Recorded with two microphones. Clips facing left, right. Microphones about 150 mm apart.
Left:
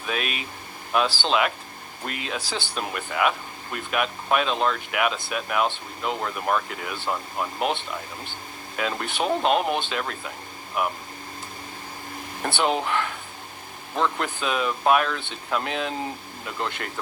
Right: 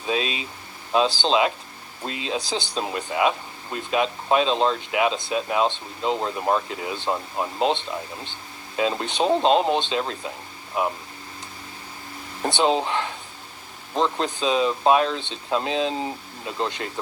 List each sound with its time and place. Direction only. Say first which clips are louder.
0.0 s speech: right 4 dB; 25° right (ahead or behind)
12.4 s speech: right 3 dB; 20° right (ahead or behind)